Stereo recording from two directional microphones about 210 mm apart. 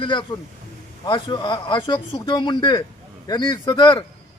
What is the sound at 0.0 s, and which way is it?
A man's voice, 20° left (ahead or behind).